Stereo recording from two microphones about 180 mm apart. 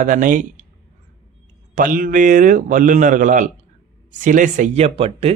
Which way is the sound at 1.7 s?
50° right (ahead or behind).